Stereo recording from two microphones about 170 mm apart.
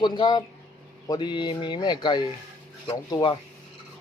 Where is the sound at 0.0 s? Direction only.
25° left (ahead or behind).